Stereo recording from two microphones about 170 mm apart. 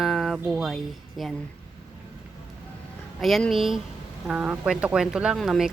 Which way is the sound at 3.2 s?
Centre (ahead or behind).